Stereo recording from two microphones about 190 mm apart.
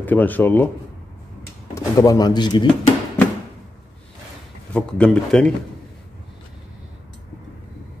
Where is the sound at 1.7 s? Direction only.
15° left (ahead or behind).